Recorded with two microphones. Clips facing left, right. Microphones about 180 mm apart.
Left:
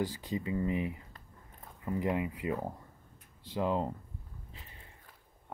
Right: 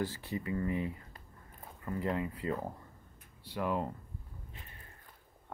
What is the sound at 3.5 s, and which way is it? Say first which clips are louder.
Speech: left 3 dB; 25° left (ahead or behind).